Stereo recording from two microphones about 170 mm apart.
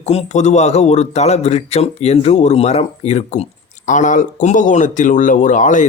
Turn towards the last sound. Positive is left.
turn(degrees=50)  # may be behind; listen again after turning